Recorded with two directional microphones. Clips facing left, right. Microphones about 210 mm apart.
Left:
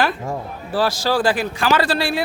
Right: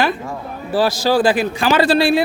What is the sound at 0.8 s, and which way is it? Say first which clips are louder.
A man's voice: right 4 dB; 20° right (ahead or behind).